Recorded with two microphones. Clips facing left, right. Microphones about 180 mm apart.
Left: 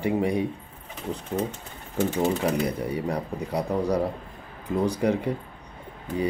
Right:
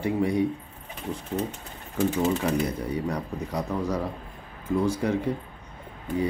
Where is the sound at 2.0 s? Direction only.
30° left (ahead or behind).